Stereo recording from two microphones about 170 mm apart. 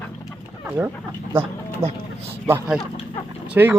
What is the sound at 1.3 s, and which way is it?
Speech, 10° right (ahead or behind).